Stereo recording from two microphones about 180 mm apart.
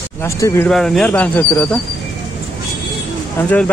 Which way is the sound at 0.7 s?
Centre (ahead or behind).